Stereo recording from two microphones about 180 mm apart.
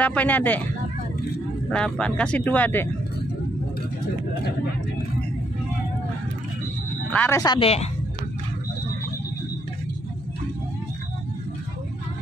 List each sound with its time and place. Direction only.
0.0 s speech: 10° left (ahead or behind)
1.7 s speech: 5° left (ahead or behind)
7.2 s speech: 15° left (ahead or behind); by 7.9 s 35° left (ahead or behind)